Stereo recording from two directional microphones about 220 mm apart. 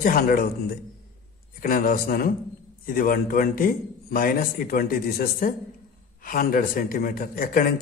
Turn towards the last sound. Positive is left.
turn(degrees=40)  # may be behind; listen again after turning